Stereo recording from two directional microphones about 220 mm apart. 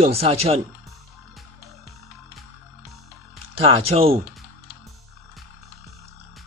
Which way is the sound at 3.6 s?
25° right (ahead or behind).